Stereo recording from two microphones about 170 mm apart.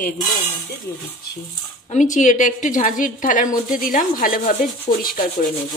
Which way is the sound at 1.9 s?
45° left (ahead or behind).